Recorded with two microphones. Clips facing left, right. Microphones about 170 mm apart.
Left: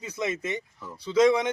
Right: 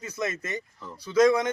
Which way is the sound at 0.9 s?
25° left (ahead or behind).